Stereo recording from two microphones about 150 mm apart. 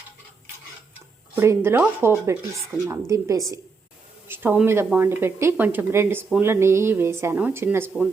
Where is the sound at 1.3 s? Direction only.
15° right (ahead or behind).